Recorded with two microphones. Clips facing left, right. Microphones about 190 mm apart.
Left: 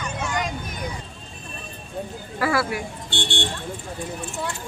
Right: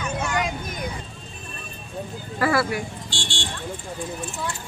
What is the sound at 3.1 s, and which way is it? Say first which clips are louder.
Speech: left 5 dB; 60° left (ahead or behind).